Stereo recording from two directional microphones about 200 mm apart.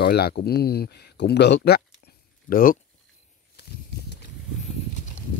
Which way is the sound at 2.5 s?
45° left (ahead or behind).